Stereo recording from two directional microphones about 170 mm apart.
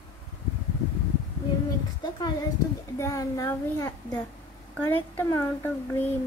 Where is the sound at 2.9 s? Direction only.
20° left (ahead or behind).